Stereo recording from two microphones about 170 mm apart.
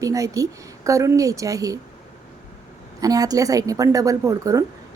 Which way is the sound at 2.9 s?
20° right (ahead or behind).